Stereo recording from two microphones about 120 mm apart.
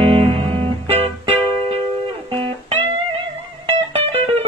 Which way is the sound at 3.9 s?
55° right (ahead or behind).